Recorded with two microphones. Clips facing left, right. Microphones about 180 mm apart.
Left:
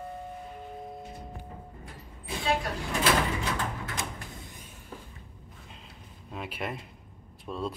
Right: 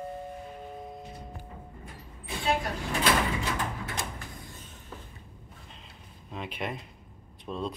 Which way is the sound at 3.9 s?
25° left (ahead or behind).